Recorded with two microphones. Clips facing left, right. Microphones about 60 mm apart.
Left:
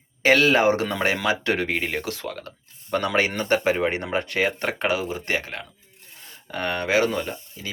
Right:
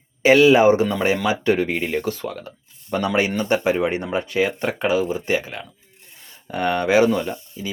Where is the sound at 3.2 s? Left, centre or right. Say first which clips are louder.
Right 2 dB; left.